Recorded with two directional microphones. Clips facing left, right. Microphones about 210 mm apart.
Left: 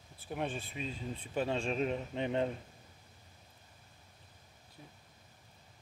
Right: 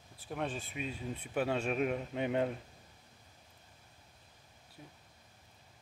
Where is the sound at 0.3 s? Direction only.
Centre (ahead or behind).